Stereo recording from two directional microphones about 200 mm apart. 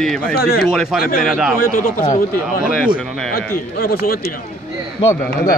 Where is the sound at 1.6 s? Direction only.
45° left (ahead or behind).